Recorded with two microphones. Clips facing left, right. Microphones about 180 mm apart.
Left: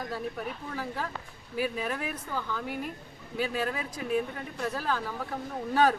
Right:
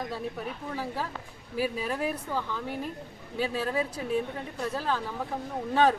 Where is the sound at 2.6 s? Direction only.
30° right (ahead or behind).